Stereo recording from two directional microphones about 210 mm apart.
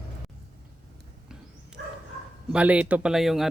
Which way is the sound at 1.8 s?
55° right (ahead or behind).